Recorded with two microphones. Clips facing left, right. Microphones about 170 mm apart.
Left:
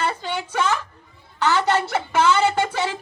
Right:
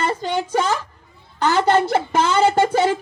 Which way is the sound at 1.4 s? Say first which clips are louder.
Right 4 dB; 50° right (ahead or behind).